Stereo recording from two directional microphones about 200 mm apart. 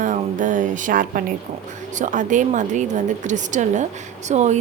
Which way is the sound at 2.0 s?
40° right (ahead or behind).